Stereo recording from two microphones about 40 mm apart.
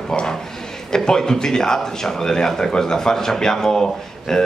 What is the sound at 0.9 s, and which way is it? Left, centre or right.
A man's voice, centre.